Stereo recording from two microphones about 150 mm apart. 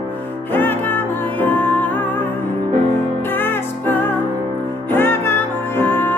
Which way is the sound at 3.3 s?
15° left (ahead or behind).